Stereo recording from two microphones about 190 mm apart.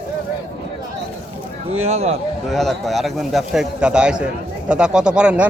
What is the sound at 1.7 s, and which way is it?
Speech, 35° right (ahead or behind).